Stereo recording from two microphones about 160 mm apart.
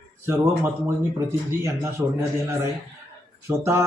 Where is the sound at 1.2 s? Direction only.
20° right (ahead or behind).